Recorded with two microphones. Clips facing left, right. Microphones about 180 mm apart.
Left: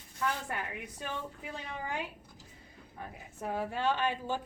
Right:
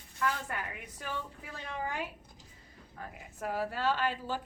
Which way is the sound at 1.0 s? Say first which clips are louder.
Even; 20° left (ahead or behind).